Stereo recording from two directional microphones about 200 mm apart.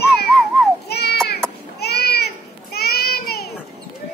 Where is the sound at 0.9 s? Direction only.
55° left (ahead or behind).